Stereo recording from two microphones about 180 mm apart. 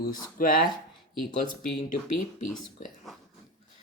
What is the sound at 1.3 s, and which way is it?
Speech, 45° left (ahead or behind).